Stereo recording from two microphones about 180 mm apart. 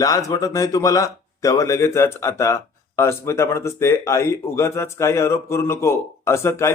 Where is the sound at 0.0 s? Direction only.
20° left (ahead or behind).